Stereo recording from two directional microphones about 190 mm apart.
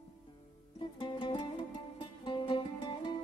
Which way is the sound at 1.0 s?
25° left (ahead or behind).